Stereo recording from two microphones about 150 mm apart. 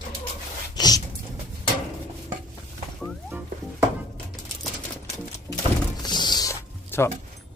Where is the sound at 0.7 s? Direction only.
25° left (ahead or behind).